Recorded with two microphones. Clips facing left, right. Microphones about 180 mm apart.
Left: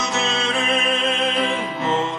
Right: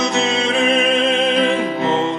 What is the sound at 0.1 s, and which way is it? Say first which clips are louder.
Music: right 5 dB; 15° right (ahead or behind).